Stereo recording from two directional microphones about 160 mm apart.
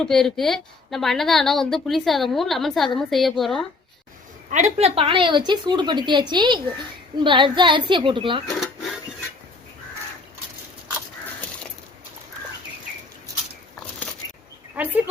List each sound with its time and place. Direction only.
0.0 s a woman's voice: 5° left (ahead or behind)
4.5 s a woman's voice: 35° right (ahead or behind)
8.4 s cash register: centre (ahead or behind)
14.8 s speech: 10° right (ahead or behind)